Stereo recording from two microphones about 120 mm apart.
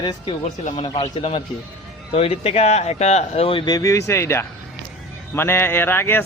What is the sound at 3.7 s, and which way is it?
Speech, 25° left (ahead or behind).